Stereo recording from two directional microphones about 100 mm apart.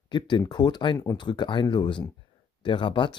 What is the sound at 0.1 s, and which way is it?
Speech, 50° left (ahead or behind).